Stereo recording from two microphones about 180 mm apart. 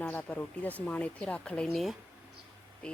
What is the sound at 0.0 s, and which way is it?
Speech, 10° left (ahead or behind).